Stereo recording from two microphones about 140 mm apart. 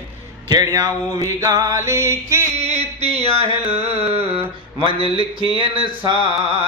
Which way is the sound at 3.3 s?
45° right (ahead or behind).